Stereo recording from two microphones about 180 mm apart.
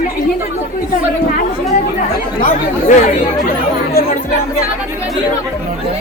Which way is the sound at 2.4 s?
45° left (ahead or behind).